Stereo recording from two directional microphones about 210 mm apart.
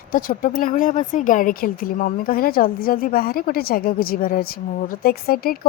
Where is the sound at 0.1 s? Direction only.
40° left (ahead or behind).